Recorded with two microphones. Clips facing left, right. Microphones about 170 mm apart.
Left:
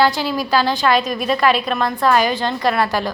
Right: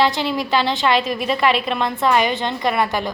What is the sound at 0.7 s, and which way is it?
A woman's voice, 25° right (ahead or behind).